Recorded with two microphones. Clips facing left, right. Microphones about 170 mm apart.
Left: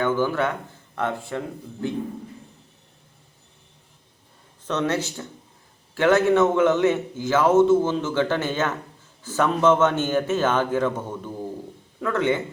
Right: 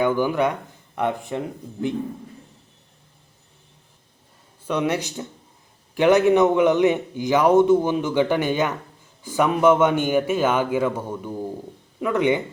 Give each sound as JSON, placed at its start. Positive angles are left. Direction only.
{"t": 0.0, "sound": "a man's voice", "side_deg": -15}
{"t": 4.6, "sound": "a man's voice", "side_deg": -10}